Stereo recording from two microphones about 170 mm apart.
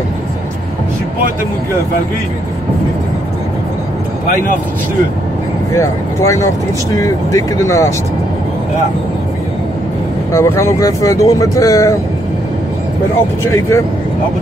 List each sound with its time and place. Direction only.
5.8 s speech: 15° left (ahead or behind)
10.3 s speech: 15° left (ahead or behind)